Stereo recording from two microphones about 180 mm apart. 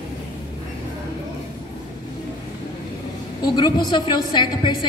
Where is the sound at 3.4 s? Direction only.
25° left (ahead or behind).